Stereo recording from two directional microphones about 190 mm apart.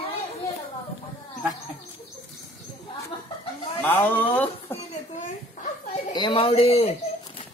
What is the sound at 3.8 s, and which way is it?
Speech, 10° left (ahead or behind).